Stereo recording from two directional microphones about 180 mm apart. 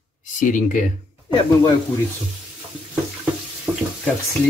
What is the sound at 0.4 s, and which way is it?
Speech, 45° left (ahead or behind).